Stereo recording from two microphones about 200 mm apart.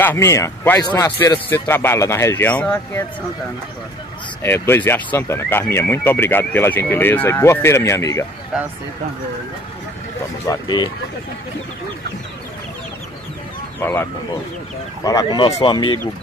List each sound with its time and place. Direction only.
0.0 s speech: 10° left (ahead or behind)
4.4 s speech: 10° left (ahead or behind)
8.5 s speech: 5° right (ahead or behind)
10.4 s speech: 20° left (ahead or behind)
13.7 s speech: 10° left (ahead or behind)
15.0 s speech: 20° left (ahead or behind)